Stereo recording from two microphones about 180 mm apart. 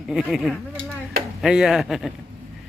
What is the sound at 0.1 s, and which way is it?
Speech, centre (ahead or behind).